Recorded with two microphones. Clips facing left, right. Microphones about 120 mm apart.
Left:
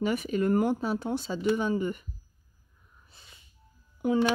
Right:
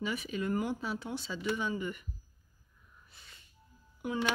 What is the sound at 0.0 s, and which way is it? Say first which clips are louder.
Speech: left 8 dB; 50° left (ahead or behind).